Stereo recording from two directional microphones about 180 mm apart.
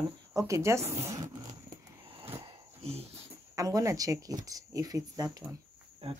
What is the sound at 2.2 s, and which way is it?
Wheeze, 35° right (ahead or behind).